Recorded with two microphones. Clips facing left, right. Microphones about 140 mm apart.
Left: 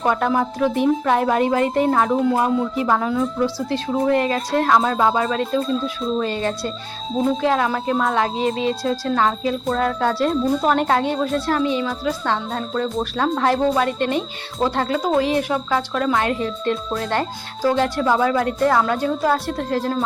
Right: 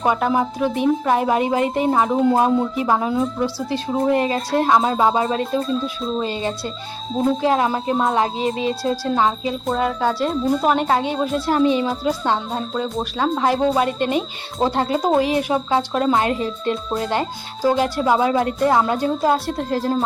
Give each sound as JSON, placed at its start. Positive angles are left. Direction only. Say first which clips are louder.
{"t": 0.0, "sound": "speech", "louder": "even", "side_deg": -15}
{"t": 11.2, "sound": "speech", "louder": "right 2 dB", "side_deg": -15}
{"t": 17.1, "sound": "speech", "louder": "even", "side_deg": -10}